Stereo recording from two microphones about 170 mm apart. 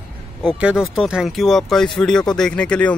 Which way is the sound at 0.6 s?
5° right (ahead or behind).